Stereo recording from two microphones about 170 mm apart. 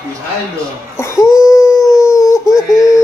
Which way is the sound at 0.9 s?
15° left (ahead or behind).